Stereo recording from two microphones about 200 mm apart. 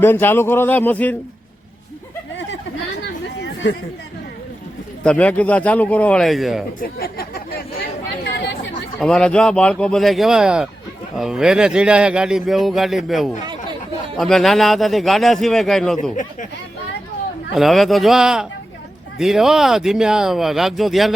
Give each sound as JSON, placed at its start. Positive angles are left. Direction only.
{"t": 0.0, "sound": "a man's voice", "side_deg": 10}
{"t": 3.0, "sound": "chatter", "side_deg": 60}
{"t": 5.0, "sound": "a man's voice", "side_deg": 5}
{"t": 6.7, "sound": "chatter", "side_deg": 50}
{"t": 9.0, "sound": "speech", "side_deg": 5}
{"t": 17.5, "sound": "speech", "side_deg": 0}